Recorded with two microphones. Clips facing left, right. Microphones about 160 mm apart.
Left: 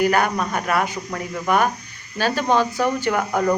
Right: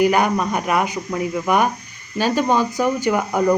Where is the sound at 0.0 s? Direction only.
10° right (ahead or behind).